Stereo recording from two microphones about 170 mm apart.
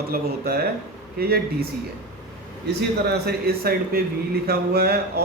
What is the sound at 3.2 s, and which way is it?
Speech, 65° right (ahead or behind).